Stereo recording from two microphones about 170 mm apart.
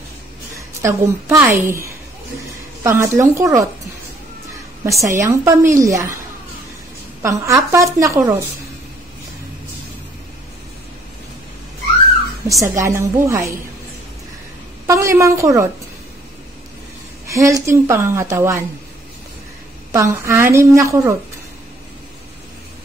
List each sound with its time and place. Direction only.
0.8 s a woman's voice: 15° right (ahead or behind)
4.8 s a woman's voice: 20° right (ahead or behind)
7.2 s a woman's voice: 20° right (ahead or behind)
12.4 s a woman's voice: 20° right (ahead or behind)
14.9 s a woman's voice: 15° right (ahead or behind)
17.3 s a woman's voice: 20° right (ahead or behind)
19.9 s a woman's voice: 15° right (ahead or behind)